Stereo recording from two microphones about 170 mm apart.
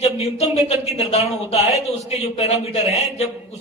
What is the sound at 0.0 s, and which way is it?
A man's voice, 40° left (ahead or behind).